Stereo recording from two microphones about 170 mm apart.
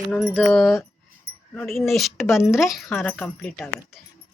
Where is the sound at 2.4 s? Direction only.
Centre (ahead or behind).